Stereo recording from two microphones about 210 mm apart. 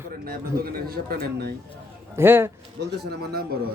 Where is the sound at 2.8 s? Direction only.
55° right (ahead or behind).